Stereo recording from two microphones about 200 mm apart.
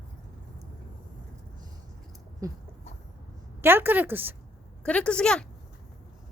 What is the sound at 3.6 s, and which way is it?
Speech, 10° right (ahead or behind).